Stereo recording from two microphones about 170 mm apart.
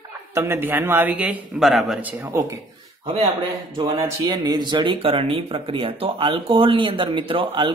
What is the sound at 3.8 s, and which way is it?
Speech, 20° right (ahead or behind).